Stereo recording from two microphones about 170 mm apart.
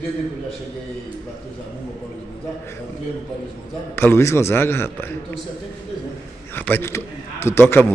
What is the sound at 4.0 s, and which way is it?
A man's voice, 15° left (ahead or behind).